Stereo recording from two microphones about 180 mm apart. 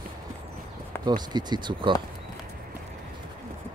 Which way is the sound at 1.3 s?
25° right (ahead or behind).